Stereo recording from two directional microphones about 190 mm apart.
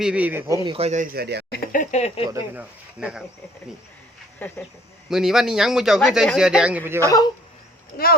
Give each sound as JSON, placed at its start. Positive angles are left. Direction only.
{"t": 0.0, "sound": "speech", "side_deg": -5}
{"t": 0.8, "sound": "speech", "side_deg": -35}
{"t": 1.1, "sound": "speech", "side_deg": -55}
{"t": 1.5, "sound": "speech", "side_deg": 55}
{"t": 2.3, "sound": "a man's voice", "side_deg": -5}
{"t": 4.4, "sound": "speech", "side_deg": 10}
{"t": 5.0, "sound": "a man's voice", "side_deg": 0}